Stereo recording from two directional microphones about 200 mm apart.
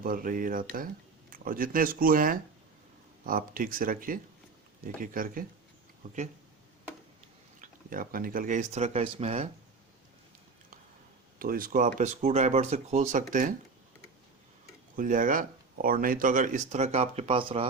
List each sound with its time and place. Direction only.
0.0 s speech: 45° right (ahead or behind)
7.6 s speech: 45° right (ahead or behind)
11.3 s speech: 45° right (ahead or behind)
14.9 s speech: 45° right (ahead or behind); by 17.7 s 25° right (ahead or behind)